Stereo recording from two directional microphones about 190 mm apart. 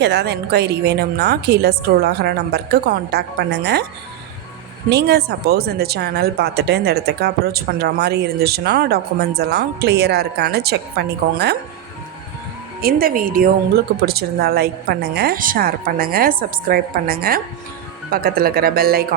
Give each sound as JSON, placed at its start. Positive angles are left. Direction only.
{"t": 0.0, "sound": "speech", "side_deg": -60}
{"t": 4.9, "sound": "speech", "side_deg": -60}
{"t": 12.8, "sound": "a woman's voice", "side_deg": -50}